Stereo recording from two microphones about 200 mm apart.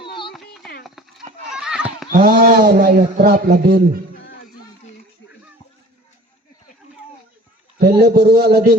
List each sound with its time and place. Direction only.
0.3 s a sound: centre (ahead or behind)
0.9 s horse: centre (ahead or behind)
2.0 s a man's voice: 50° right (ahead or behind)
7.8 s a man's voice: 55° right (ahead or behind)